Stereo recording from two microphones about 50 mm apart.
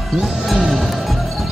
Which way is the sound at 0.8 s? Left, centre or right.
Centre.